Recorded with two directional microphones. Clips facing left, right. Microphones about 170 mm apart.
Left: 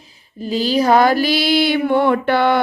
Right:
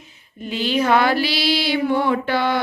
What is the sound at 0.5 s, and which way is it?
Female singing, 35° left (ahead or behind).